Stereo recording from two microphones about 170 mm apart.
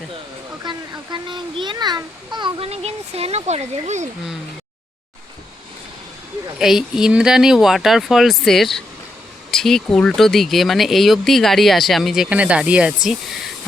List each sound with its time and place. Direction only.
0.6 s a child's voice: 25° right (ahead or behind); by 4.1 s 45° right (ahead or behind)
6.6 s speech: centre (ahead or behind)